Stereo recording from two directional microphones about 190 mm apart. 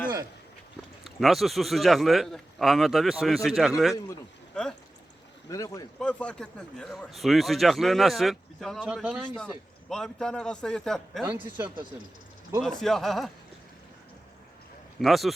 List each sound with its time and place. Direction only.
1.0 s speech: centre (ahead or behind)
5.5 s speech: 15° left (ahead or behind)
6.0 s speech: 5° left (ahead or behind)
11.3 s speech: 10° right (ahead or behind)
12.6 s speech: centre (ahead or behind)
15.0 s speech: centre (ahead or behind)